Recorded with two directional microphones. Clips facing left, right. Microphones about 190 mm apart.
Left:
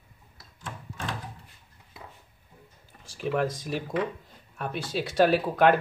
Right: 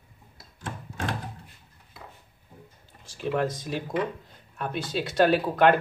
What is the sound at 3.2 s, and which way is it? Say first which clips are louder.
Speech: even; 5° left (ahead or behind).